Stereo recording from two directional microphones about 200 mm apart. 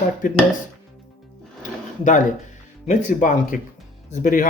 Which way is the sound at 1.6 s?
40° left (ahead or behind).